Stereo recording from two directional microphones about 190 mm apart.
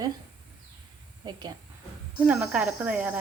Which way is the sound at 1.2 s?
20° right (ahead or behind).